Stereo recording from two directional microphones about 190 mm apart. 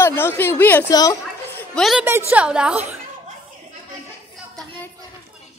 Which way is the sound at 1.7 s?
Centre (ahead or behind).